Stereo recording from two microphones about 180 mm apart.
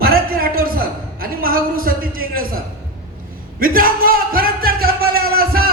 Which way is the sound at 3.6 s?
50° right (ahead or behind).